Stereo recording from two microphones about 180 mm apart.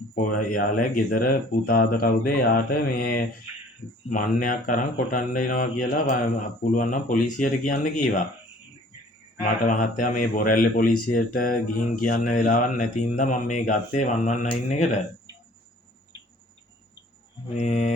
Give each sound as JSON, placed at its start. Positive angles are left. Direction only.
{"t": 0.2, "sound": "mantra", "side_deg": 50}
{"t": 9.6, "sound": "mantra", "side_deg": 45}
{"t": 14.4, "sound": "speech", "side_deg": 40}
{"t": 17.5, "sound": "speech", "side_deg": 40}